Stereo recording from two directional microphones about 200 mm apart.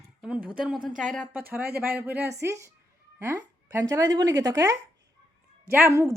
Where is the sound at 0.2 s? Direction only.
5° right (ahead or behind).